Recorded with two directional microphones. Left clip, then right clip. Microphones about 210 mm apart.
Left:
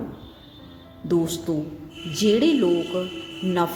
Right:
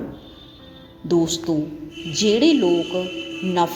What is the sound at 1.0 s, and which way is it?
A woman's voice, 10° left (ahead or behind).